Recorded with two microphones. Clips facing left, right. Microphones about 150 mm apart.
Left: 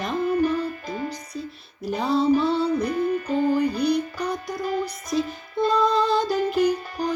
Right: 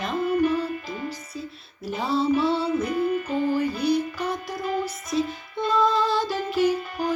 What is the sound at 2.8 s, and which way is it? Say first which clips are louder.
Music: left 1 dB; 40° left (ahead or behind).